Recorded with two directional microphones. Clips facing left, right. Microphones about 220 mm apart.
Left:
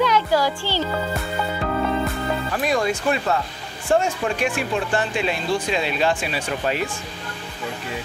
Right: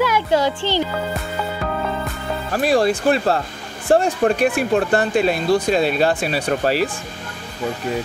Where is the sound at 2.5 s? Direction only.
35° right (ahead or behind).